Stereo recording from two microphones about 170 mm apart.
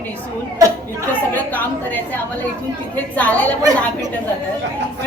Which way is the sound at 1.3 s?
10° left (ahead or behind).